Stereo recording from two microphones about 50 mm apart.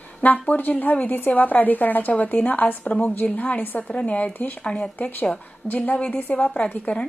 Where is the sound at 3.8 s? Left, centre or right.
Left.